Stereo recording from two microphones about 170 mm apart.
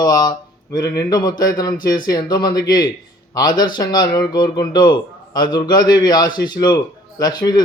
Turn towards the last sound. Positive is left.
turn(degrees=25)  # may be behind; listen again after turning